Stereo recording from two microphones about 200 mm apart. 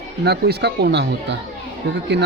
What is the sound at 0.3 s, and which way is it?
Speech, 55° right (ahead or behind).